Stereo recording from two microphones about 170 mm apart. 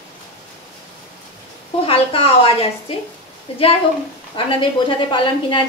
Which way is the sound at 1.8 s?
35° left (ahead or behind).